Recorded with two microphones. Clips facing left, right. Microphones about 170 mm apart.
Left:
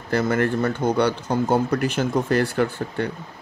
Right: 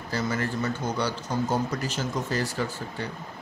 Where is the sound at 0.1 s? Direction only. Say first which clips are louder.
Left 8 dB; 55° left (ahead or behind).